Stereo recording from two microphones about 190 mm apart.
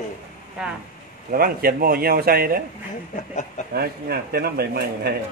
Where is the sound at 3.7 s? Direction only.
55° right (ahead or behind).